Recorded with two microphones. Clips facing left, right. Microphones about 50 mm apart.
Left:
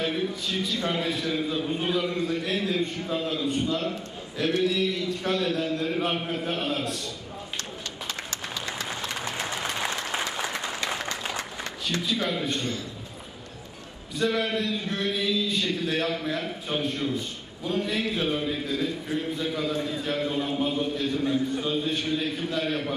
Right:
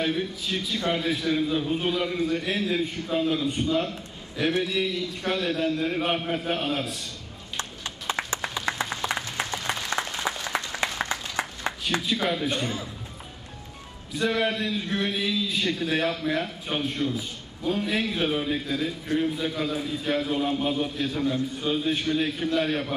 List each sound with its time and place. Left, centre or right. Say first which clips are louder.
0.5 s a man's voice: right 1 dB; centre
8.3 s applause: right 4 dB; right
8.6 s a sound: right 5 dB; right
9.8 s applause: left 1 dB; left
11.3 s a sound: right 4 dB; right
12.1 s a man's voice: right 1 dB; centre
14.1 s a man's voice: right 1 dB; centre
17.0 s a man's voice: right 1 dB; centre